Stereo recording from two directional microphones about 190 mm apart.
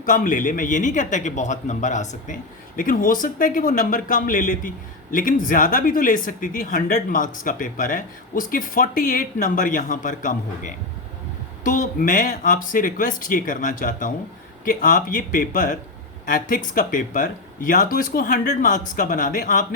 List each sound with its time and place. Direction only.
0.0 s speech: 45° left (ahead or behind)